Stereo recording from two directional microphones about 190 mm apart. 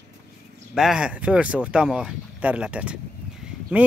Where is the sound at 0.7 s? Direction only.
5° right (ahead or behind).